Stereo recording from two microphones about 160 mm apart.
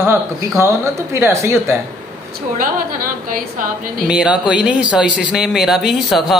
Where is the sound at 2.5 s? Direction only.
60° right (ahead or behind).